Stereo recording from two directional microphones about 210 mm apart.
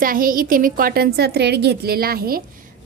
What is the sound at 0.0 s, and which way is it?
A woman's voice, 40° right (ahead or behind).